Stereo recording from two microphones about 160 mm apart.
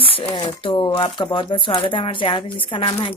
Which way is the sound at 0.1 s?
30° left (ahead or behind).